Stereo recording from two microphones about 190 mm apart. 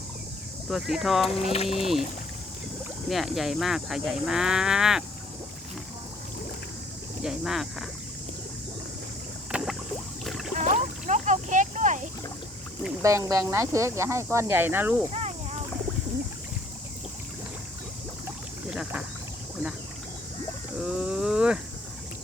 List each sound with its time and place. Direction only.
0.7 s speech: centre (ahead or behind)
1.4 s speech: 35° left (ahead or behind)
1.8 s speech: centre (ahead or behind)
3.1 s speech: centre (ahead or behind)
7.2 s speech: centre (ahead or behind)
9.5 s boat: 5° right (ahead or behind)
10.6 s a sound: 40° right (ahead or behind)
13.0 s speech: 15° right (ahead or behind)
15.1 s a sound: 35° right (ahead or behind)
18.3 s rowboat: 5° right (ahead or behind)
20.8 s a sound: 5° right (ahead or behind)